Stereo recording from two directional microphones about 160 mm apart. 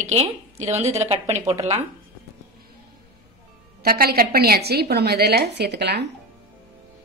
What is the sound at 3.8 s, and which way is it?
A woman's voice, 70° right (ahead or behind).